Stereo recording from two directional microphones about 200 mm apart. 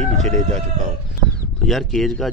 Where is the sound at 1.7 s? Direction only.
Centre (ahead or behind).